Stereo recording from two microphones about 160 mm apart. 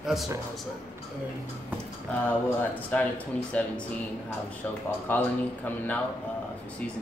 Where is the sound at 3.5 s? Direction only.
10° left (ahead or behind).